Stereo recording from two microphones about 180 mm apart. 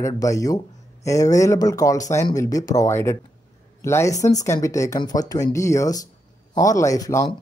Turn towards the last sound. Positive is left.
turn(degrees=20)  # may be behind; listen again after turning